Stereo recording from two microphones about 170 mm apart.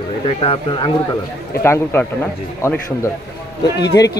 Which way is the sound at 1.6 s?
15° left (ahead or behind).